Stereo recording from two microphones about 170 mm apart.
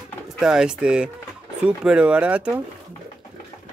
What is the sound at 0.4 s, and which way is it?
Speech, 5° right (ahead or behind).